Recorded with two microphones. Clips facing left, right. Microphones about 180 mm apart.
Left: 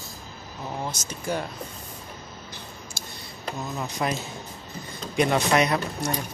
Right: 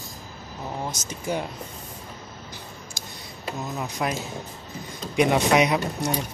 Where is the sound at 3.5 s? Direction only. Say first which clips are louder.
Right 1 dB; 5° right (ahead or behind).